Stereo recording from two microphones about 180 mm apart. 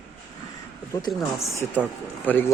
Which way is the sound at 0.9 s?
20° left (ahead or behind).